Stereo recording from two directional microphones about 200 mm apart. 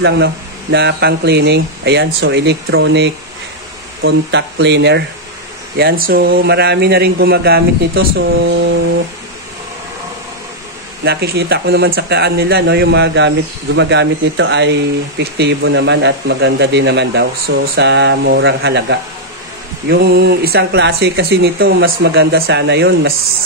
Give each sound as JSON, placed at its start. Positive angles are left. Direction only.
{"t": 0.0, "sound": "speech", "side_deg": -60}
{"t": 5.8, "sound": "speech", "side_deg": -50}
{"t": 11.1, "sound": "speech", "side_deg": -55}